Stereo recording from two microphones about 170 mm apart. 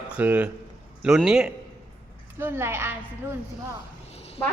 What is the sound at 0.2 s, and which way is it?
A woman's voice, 10° right (ahead or behind).